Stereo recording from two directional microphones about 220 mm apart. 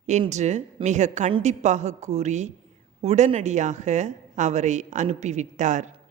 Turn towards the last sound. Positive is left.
turn(degrees=-35)  # may be behind; listen again after turning